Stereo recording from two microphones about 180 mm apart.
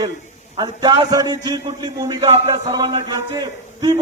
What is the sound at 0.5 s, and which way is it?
A man's voice, 20° right (ahead or behind).